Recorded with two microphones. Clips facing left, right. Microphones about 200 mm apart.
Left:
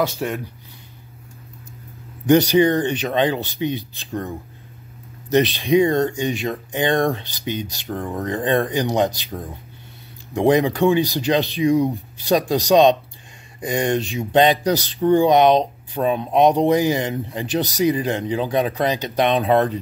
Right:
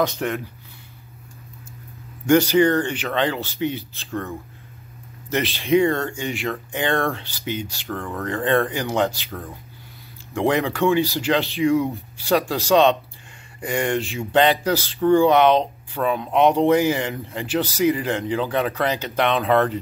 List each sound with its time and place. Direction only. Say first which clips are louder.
0.0 s speech: even; 10° left (ahead or behind)
2.2 s speech: left 1 dB; 15° left (ahead or behind)
5.3 s speech: left 3 dB; 15° left (ahead or behind)